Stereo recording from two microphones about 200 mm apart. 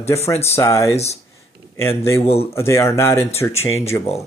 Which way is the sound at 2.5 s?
15° left (ahead or behind).